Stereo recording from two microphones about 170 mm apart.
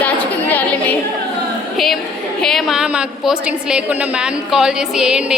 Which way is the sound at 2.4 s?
Centre (ahead or behind).